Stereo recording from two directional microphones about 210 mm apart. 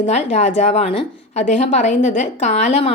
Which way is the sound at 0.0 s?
30° left (ahead or behind).